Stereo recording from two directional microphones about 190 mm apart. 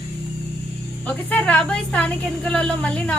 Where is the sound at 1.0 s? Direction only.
5° left (ahead or behind).